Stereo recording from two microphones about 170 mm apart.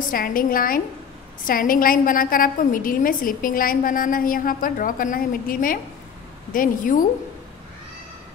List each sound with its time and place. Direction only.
0.1 s a woman's voice: 55° left (ahead or behind)